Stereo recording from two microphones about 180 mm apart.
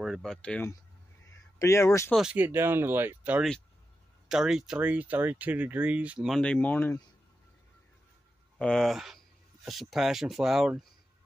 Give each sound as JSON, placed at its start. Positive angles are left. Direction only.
{"t": 0.0, "sound": "speech", "side_deg": 0}
{"t": 1.6, "sound": "speech", "side_deg": 15}
{"t": 2.1, "sound": "speech", "side_deg": -5}
{"t": 8.5, "sound": "speech", "side_deg": 5}